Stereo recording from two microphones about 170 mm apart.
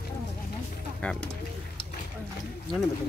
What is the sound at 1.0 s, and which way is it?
Speech, 10° left (ahead or behind).